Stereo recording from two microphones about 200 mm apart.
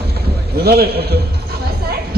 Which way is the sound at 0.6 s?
50° right (ahead or behind).